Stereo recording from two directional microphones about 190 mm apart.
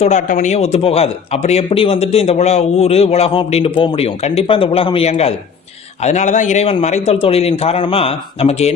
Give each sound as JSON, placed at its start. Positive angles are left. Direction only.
{"t": 0.0, "sound": "a man's voice", "side_deg": 40}